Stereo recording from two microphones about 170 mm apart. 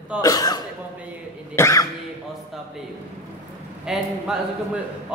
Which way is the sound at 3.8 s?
5° right (ahead or behind).